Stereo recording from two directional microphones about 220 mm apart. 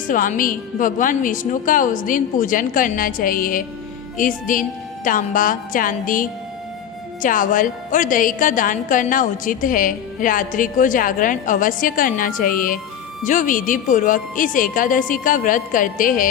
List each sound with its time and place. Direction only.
0.1 s a woman's voice: 40° left (ahead or behind)